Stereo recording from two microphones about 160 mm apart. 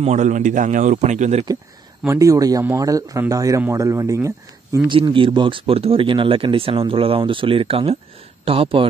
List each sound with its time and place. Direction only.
0.0 s a man's voice: 50° right (ahead or behind)
2.0 s speech: 20° right (ahead or behind)
4.8 s speech: 30° right (ahead or behind)